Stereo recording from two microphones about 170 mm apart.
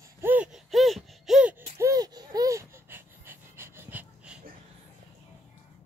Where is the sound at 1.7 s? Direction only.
20° right (ahead or behind).